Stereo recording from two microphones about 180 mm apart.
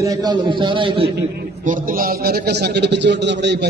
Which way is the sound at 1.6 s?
45° right (ahead or behind).